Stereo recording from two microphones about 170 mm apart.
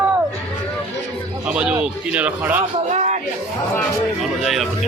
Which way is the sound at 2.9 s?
40° right (ahead or behind).